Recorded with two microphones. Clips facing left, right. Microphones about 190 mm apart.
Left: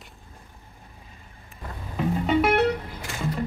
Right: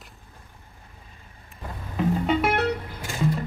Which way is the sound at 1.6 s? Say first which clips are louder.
Right 2 dB; centre (ahead or behind).